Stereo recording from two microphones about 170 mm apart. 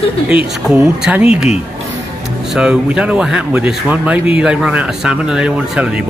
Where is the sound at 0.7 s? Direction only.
5° right (ahead or behind).